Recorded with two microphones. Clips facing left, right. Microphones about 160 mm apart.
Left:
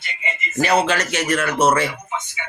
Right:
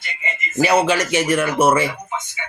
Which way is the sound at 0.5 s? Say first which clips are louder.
Right 2 dB; 10° right (ahead or behind).